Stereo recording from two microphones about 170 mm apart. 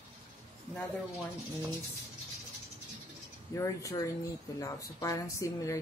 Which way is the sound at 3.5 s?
20° left (ahead or behind).